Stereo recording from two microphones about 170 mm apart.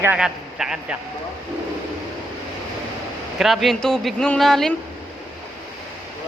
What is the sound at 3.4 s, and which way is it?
Speech, centre (ahead or behind).